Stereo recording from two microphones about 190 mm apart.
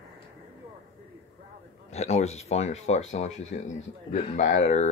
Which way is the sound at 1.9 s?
35° left (ahead or behind).